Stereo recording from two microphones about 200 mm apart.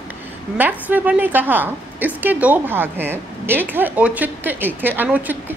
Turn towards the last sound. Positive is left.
turn(degrees=-10)  # may be behind; listen again after turning